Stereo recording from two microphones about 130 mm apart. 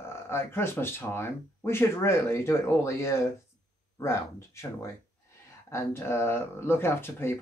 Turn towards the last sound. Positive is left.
turn(degrees=20)  # may be behind; listen again after turning